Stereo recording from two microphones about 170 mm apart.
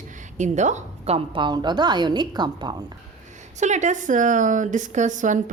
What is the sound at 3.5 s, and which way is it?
Speech, 45° right (ahead or behind).